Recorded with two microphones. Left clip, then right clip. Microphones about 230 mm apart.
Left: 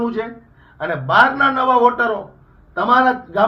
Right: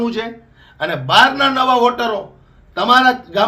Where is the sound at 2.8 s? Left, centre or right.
Right.